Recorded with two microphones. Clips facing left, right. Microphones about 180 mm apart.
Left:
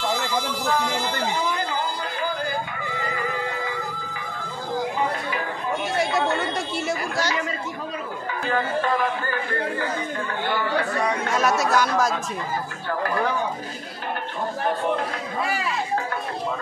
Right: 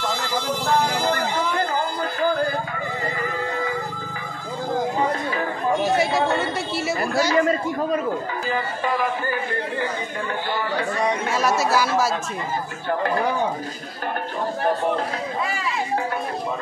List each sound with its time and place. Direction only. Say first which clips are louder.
7.3 s a man's voice: right 9 dB; 50° right (ahead or behind)
8.5 s speech: left 3 dB; 15° right (ahead or behind)
11.2 s speech: right 1 dB; centre (ahead or behind)